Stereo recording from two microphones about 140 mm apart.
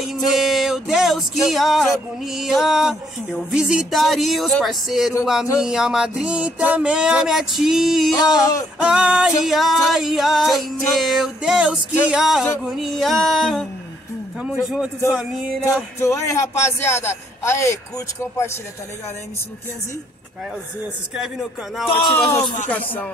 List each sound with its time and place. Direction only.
0.3 s music: centre (ahead or behind)
15.6 s a man's voice: 20° left (ahead or behind)
21.1 s music: centre (ahead or behind)